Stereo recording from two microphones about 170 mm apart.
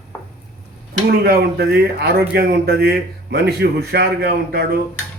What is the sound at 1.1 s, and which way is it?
Speech, 65° right (ahead or behind).